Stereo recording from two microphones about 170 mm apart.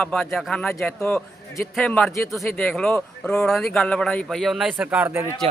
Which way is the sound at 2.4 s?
5° left (ahead or behind).